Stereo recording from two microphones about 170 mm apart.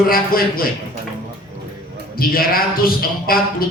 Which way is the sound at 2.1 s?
60° left (ahead or behind).